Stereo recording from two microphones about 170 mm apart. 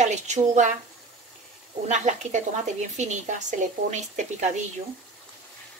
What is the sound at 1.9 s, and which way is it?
A woman's voice, 45° right (ahead or behind).